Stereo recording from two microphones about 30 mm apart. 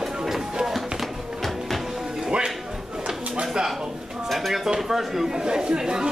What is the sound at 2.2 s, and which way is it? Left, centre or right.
Music, right.